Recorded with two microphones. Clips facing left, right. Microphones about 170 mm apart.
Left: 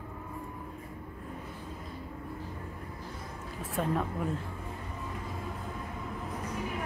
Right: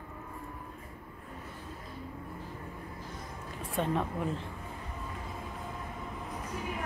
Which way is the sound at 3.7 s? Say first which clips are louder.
Even; centre (ahead or behind).